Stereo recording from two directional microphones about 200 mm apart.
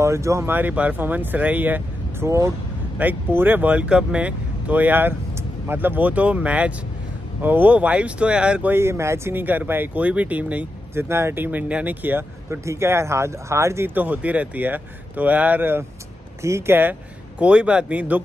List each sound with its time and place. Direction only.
0.0 s speech: 15° right (ahead or behind)